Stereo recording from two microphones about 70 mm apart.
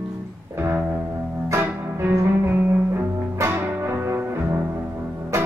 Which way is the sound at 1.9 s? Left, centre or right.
Right.